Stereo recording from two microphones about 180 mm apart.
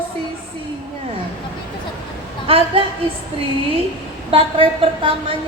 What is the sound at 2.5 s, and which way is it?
Speech, 30° right (ahead or behind).